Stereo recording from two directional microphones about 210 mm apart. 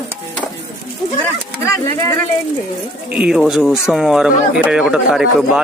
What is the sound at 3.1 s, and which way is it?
Speech, 5° right (ahead or behind).